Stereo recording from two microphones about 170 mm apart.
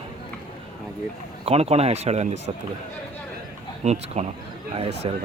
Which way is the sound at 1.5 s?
35° right (ahead or behind).